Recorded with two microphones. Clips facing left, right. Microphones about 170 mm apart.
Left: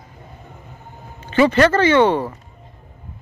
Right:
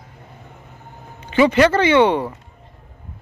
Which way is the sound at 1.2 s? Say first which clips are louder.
Even; 15° right (ahead or behind).